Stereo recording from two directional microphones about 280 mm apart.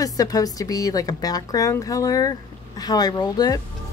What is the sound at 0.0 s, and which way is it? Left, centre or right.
A woman's voice, centre.